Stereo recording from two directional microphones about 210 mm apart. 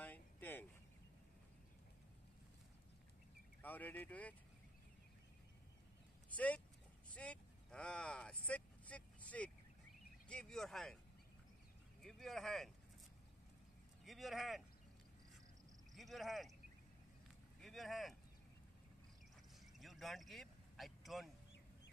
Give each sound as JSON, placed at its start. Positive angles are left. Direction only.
{"t": 0.0, "sound": "a sound", "side_deg": 10}
{"t": 3.6, "sound": "speech", "side_deg": 10}
{"t": 6.3, "sound": "speech", "side_deg": 5}
{"t": 7.1, "sound": "vehicle", "side_deg": 5}
{"t": 10.2, "sound": "speech", "side_deg": 5}
{"t": 12.0, "sound": "speech", "side_deg": 0}
{"t": 14.0, "sound": "speech", "side_deg": 0}
{"t": 15.9, "sound": "speech", "side_deg": 0}
{"t": 17.6, "sound": "speech", "side_deg": 0}
{"t": 19.6, "sound": "vehicle", "side_deg": 0}